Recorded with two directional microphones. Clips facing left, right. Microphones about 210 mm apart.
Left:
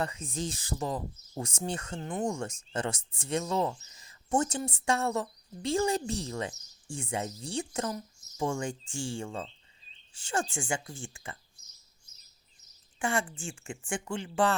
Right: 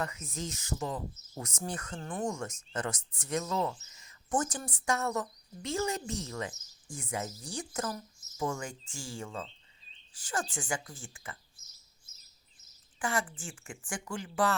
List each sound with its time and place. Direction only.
0.0 s speech: 30° left (ahead or behind)
13.0 s speech: 25° left (ahead or behind)